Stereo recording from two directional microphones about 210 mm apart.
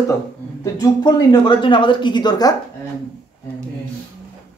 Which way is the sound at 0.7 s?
20° left (ahead or behind).